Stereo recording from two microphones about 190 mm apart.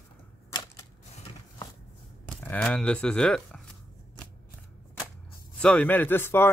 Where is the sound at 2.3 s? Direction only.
5° left (ahead or behind).